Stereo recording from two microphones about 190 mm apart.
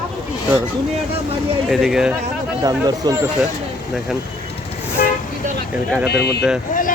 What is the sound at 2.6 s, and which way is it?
Speech, 20° right (ahead or behind).